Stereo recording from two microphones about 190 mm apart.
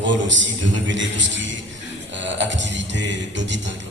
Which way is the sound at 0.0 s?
75° right (ahead or behind).